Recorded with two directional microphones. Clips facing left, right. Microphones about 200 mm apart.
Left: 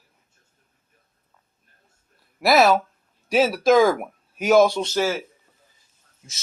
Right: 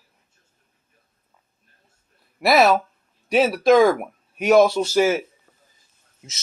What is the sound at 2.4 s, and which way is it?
A man's voice, centre (ahead or behind).